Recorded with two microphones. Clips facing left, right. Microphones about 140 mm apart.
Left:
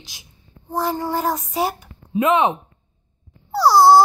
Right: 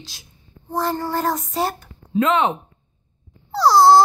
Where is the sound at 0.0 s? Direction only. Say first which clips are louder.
Right 3 dB; 15° left (ahead or behind).